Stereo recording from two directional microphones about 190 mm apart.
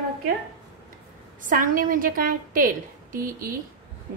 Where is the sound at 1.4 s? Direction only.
45° right (ahead or behind).